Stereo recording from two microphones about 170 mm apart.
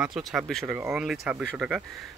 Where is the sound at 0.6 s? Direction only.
10° right (ahead or behind).